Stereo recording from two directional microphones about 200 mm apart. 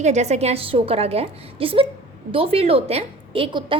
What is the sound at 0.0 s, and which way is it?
A woman's voice, 35° right (ahead or behind).